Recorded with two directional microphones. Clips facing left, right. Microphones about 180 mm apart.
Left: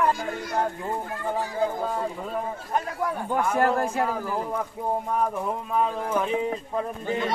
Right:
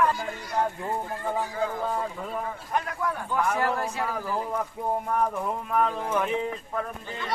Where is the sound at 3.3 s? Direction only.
50° left (ahead or behind).